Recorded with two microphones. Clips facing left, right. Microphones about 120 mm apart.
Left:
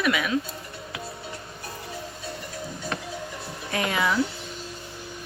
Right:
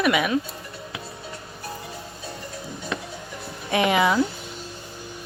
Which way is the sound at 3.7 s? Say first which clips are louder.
Right 6 dB; 15° right (ahead or behind).